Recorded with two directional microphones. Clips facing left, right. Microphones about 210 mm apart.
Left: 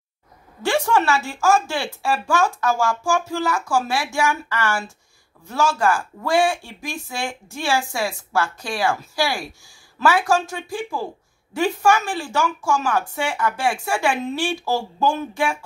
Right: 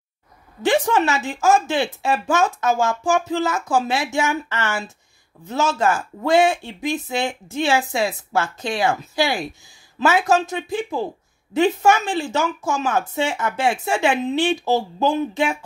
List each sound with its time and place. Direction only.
0.6 s a woman's voice: 20° right (ahead or behind)